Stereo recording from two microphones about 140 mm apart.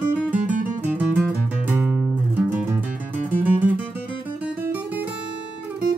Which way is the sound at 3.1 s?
15° right (ahead or behind).